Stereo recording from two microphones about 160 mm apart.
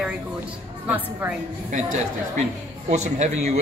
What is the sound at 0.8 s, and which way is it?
Speech, 10° right (ahead or behind).